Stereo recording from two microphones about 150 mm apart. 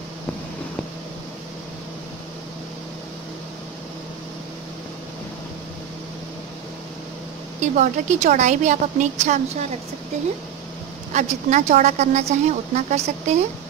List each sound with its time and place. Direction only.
7.6 s a woman's voice: 55° right (ahead or behind)
11.1 s a woman's voice: 50° right (ahead or behind)